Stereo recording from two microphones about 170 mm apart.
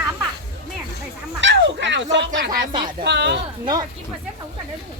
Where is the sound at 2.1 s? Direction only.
90° right.